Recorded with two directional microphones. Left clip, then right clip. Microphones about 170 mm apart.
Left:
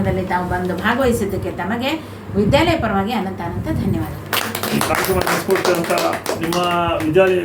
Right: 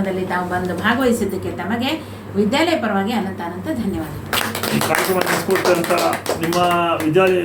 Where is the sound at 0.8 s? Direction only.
15° left (ahead or behind).